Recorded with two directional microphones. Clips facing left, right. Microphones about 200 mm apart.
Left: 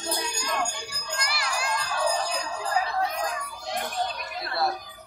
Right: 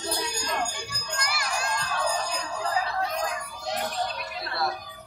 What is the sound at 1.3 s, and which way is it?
Children playing, 45° right (ahead or behind).